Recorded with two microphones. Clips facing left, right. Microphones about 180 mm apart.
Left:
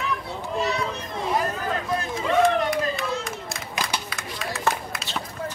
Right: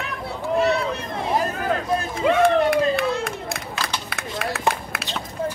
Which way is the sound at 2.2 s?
60° right (ahead or behind).